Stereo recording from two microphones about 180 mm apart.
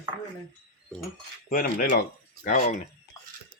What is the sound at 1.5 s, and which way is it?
Speech, 50° left (ahead or behind).